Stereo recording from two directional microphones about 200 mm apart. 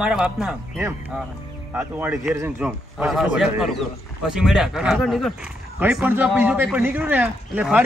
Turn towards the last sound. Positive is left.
turn(degrees=-5)  # may be behind; listen again after turning